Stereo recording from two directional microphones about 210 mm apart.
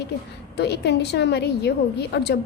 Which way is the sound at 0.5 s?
50° left (ahead or behind).